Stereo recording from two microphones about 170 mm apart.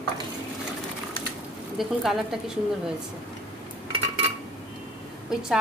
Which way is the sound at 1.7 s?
Centre (ahead or behind).